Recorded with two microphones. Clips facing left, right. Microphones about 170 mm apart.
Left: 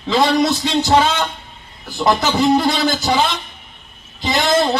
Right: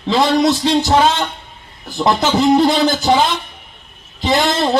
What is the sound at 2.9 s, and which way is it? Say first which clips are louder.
Speech: right 3 dB; 40° right (ahead or behind).